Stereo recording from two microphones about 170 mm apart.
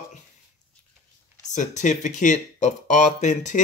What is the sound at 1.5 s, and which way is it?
Speech, 45° left (ahead or behind).